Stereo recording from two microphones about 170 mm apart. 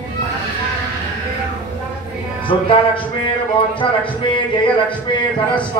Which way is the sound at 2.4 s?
30° left (ahead or behind).